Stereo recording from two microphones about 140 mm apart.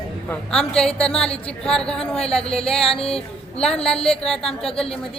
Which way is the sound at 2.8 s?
40° left (ahead or behind).